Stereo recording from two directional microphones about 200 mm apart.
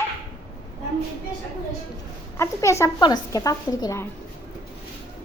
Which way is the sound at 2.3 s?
15° left (ahead or behind).